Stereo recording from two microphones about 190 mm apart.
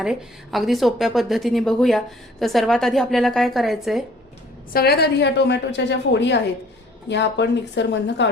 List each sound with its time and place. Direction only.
0.0 s a woman's voice: centre (ahead or behind)
4.7 s a woman's voice: 55° left (ahead or behind)